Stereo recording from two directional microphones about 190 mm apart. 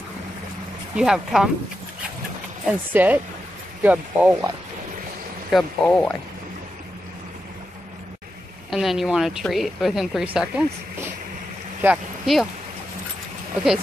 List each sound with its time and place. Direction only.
0.9 s a woman's voice: 5° right (ahead or behind)
2.9 s speech: 10° right (ahead or behind)
5.5 s speech: 5° left (ahead or behind)
8.6 s a woman's voice: centre (ahead or behind)